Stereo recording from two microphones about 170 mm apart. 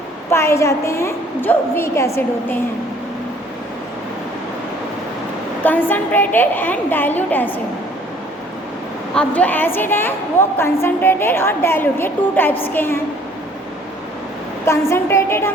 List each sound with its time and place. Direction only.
0.3 s a woman's voice: 15° left (ahead or behind)
5.6 s a woman's voice: 10° left (ahead or behind)
9.1 s a woman's voice: 10° left (ahead or behind)
14.6 s a woman's voice: 15° left (ahead or behind)